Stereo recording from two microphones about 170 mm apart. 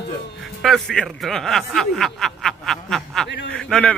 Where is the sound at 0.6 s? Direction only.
5° left (ahead or behind).